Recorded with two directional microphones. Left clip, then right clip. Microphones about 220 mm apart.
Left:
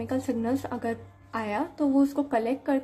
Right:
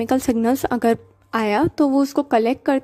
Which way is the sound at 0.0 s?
45° right (ahead or behind).